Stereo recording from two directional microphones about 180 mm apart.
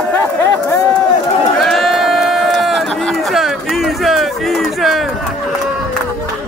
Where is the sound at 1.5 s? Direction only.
Centre (ahead or behind).